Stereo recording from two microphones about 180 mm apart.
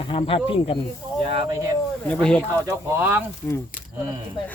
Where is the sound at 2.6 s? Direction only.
10° right (ahead or behind).